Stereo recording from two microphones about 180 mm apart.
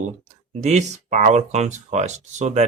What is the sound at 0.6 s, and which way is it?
Speech, 40° right (ahead or behind).